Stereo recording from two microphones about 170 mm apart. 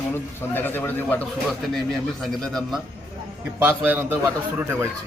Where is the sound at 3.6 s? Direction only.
10° right (ahead or behind).